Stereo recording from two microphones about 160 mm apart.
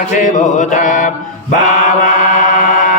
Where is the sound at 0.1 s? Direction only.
50° left (ahead or behind).